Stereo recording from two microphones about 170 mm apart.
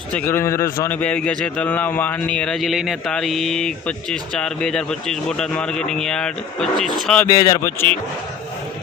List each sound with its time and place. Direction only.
0.1 s a man's voice: 10° left (ahead or behind)
7.3 s speech: 20° left (ahead or behind)